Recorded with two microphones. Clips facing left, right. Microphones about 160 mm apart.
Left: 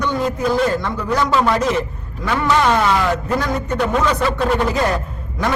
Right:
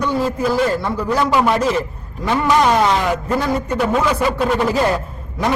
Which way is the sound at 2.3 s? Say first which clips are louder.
Right 1 dB; 15° right (ahead or behind).